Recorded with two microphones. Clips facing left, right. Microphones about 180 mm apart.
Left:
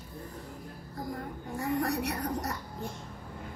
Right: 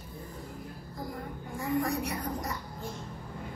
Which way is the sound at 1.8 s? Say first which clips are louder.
Left 1 dB; 70° left (ahead or behind).